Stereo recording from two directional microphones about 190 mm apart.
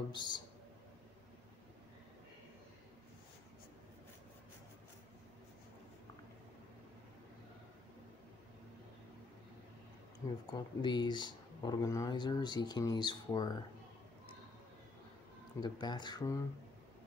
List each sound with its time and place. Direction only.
0.1 s speech: 25° left (ahead or behind)
10.5 s speech: 25° left (ahead or behind)
15.6 s speech: 25° left (ahead or behind)